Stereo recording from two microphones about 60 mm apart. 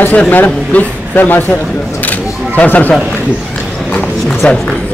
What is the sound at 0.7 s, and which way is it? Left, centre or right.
A man's voice, left.